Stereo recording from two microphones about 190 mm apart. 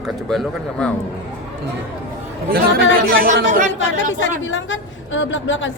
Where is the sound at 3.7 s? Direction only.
75° left (ahead or behind).